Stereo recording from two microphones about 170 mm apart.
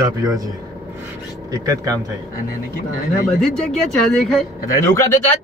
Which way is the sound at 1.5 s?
20° right (ahead or behind).